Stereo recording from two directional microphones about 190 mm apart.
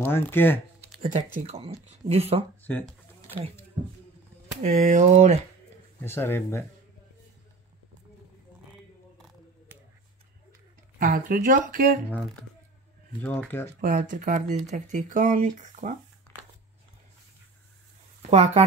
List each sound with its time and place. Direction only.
0.0 s speech: 10° left (ahead or behind)
1.0 s speech: 35° right (ahead or behind)
2.8 s a sound: 10° right (ahead or behind)
4.6 s speech: 40° right (ahead or behind)
5.9 s speech: 10° left (ahead or behind)
11.0 s speech: 50° right (ahead or behind)
13.7 s speech: 45° right (ahead or behind)
18.3 s speech: 35° right (ahead or behind)